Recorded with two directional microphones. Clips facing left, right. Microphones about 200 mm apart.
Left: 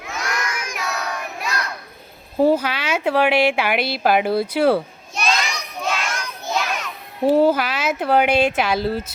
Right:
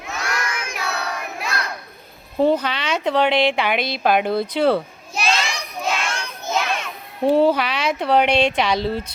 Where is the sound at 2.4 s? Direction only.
5° left (ahead or behind).